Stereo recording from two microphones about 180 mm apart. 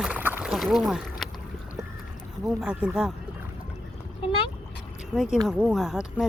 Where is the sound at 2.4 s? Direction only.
5° right (ahead or behind).